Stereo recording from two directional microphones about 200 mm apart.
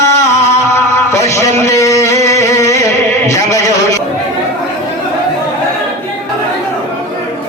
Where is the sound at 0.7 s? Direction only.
15° left (ahead or behind).